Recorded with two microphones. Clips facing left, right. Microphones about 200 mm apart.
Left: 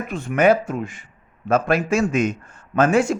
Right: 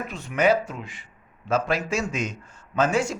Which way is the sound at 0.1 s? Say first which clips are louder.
Left 5 dB; 55° left (ahead or behind).